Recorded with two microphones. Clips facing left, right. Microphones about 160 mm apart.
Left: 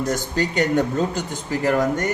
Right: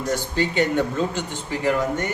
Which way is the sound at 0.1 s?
40° left (ahead or behind).